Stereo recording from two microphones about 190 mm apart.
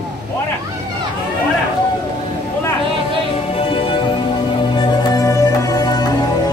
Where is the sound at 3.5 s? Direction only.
30° left (ahead or behind).